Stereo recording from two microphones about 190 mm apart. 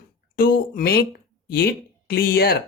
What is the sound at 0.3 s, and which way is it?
Speech, 50° left (ahead or behind).